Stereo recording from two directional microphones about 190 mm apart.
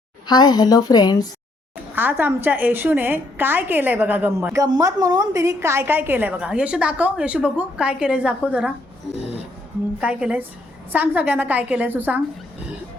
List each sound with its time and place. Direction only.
0.3 s a woman's voice: 20° left (ahead or behind)
2.0 s a woman's voice: 10° right (ahead or behind)
10.0 s a woman's voice: 5° right (ahead or behind)